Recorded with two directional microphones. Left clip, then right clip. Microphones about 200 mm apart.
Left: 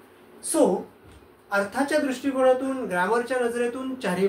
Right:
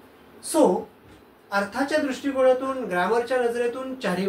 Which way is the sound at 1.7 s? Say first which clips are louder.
Even; 25° left (ahead or behind).